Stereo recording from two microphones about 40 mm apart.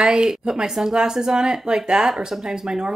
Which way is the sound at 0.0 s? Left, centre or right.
Right.